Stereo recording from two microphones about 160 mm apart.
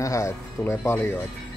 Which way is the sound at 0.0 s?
20° left (ahead or behind).